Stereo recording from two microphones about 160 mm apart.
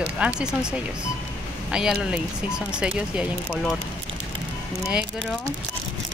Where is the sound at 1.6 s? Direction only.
5° right (ahead or behind).